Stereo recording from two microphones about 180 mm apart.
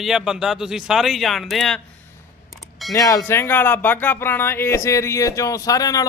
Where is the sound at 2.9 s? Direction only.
20° left (ahead or behind).